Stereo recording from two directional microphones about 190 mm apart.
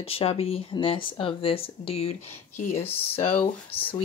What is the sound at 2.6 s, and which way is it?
Speech, 45° left (ahead or behind).